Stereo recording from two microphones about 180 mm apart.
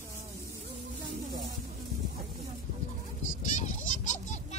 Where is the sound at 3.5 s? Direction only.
40° left (ahead or behind).